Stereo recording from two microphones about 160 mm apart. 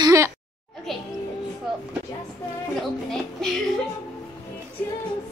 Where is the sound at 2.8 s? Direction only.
Centre (ahead or behind).